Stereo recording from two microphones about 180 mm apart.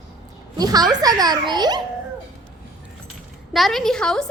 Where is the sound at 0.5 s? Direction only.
20° right (ahead or behind).